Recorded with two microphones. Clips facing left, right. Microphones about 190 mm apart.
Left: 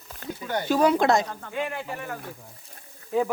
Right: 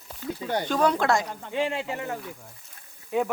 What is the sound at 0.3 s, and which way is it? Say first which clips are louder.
Speech: right 1 dB; 30° right (ahead or behind).